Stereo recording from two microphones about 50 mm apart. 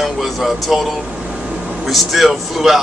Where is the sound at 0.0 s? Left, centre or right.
Centre.